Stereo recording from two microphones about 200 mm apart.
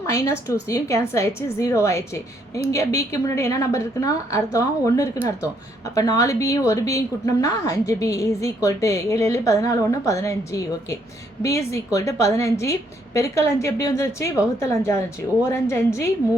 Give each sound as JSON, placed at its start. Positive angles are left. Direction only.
{"t": 0.0, "sound": "a woman's voice", "side_deg": 15}